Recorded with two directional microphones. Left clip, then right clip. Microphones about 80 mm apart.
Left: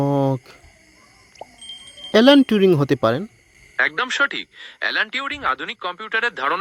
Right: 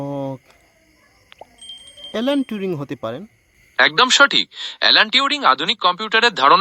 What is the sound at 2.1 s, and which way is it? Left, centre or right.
Speech, left.